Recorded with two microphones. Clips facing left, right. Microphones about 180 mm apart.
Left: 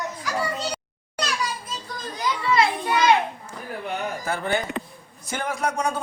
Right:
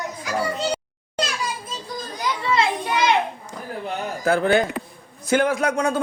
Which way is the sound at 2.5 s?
15° right (ahead or behind).